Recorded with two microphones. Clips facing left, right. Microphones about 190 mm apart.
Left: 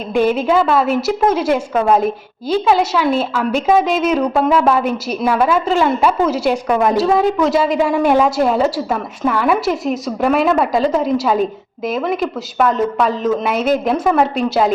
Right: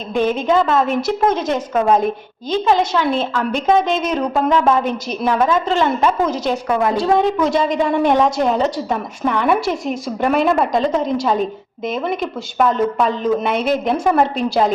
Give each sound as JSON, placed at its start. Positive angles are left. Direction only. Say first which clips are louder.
{"t": 0.1, "sound": "a woman's voice", "louder": "left 2 dB", "side_deg": 10}
{"t": 7.0, "sound": "a woman's voice", "louder": "left 1 dB", "side_deg": 5}